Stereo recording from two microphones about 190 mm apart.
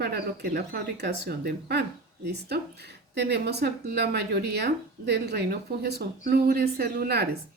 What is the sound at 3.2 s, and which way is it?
A woman's voice, 60° right (ahead or behind).